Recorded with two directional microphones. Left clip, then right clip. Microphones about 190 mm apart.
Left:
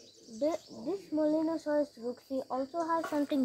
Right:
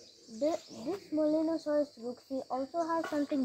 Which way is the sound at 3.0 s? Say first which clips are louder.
Left 1 dB; 45° left (ahead or behind).